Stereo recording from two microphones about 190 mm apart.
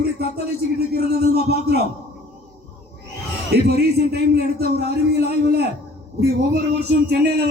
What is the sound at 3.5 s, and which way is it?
A man's voice, 55° right (ahead or behind).